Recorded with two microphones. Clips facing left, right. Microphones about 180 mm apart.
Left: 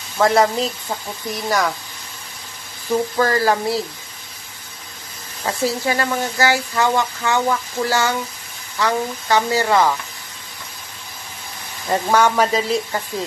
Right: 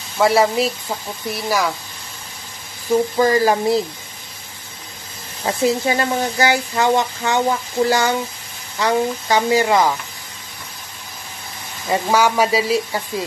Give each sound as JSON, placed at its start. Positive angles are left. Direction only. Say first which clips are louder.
{"t": 0.2, "sound": "speech", "louder": "right 1 dB", "side_deg": -10}
{"t": 2.9, "sound": "speech", "louder": "right 3 dB", "side_deg": -15}
{"t": 5.4, "sound": "speech", "louder": "right 3 dB", "side_deg": -20}
{"t": 11.9, "sound": "speech", "louder": "even", "side_deg": -10}